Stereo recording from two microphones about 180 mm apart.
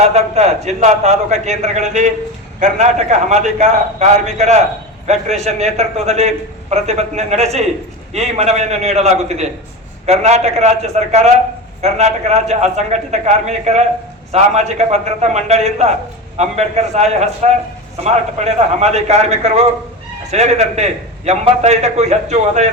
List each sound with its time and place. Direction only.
0.1 s a man's voice: 35° right (ahead or behind)